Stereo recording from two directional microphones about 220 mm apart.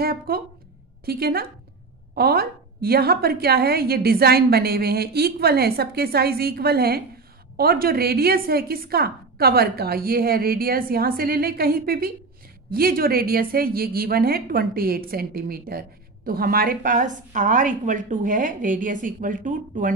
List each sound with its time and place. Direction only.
0.0 s a woman's voice: 45° right (ahead or behind)